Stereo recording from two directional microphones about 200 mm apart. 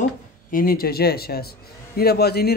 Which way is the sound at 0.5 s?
45° left (ahead or behind).